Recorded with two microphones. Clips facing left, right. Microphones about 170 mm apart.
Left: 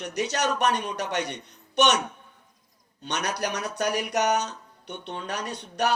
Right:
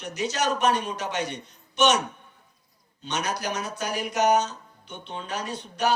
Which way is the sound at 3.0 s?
65° left (ahead or behind).